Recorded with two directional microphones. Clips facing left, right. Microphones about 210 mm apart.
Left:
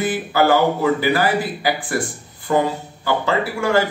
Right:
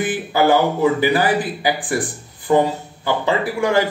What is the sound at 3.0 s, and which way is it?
Speech, 15° right (ahead or behind).